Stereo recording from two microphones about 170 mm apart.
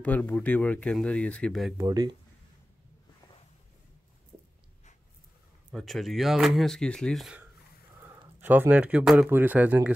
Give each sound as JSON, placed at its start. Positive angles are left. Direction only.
{"t": 0.0, "sound": "speech", "side_deg": 10}
{"t": 1.8, "sound": "speech", "side_deg": -20}
{"t": 5.7, "sound": "speech", "side_deg": 0}